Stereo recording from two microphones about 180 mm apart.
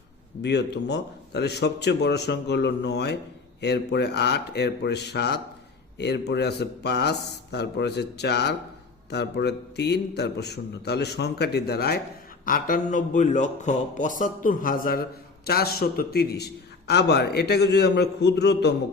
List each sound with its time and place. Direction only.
0.4 s a man's voice: 70° left (ahead or behind)
12.5 s a man's voice: 50° left (ahead or behind); by 18.7 s 65° left (ahead or behind)